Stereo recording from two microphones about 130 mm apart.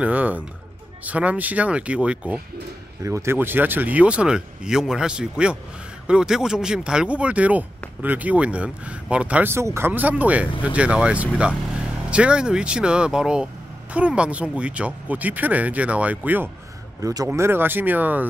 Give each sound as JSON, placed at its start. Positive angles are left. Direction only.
{"t": 0.0, "sound": "speech", "side_deg": -10}
{"t": 3.0, "sound": "speech", "side_deg": -20}
{"t": 17.0, "sound": "speech", "side_deg": -30}
{"t": 17.3, "sound": "speech", "side_deg": -15}